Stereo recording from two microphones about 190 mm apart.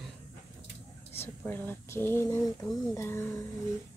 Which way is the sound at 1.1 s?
10° left (ahead or behind).